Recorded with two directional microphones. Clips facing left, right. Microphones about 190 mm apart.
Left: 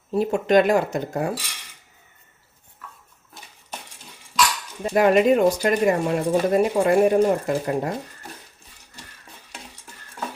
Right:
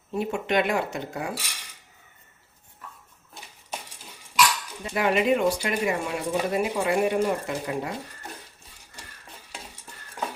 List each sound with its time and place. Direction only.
0.1 s speech: 35° left (ahead or behind)
4.8 s speech: 45° left (ahead or behind)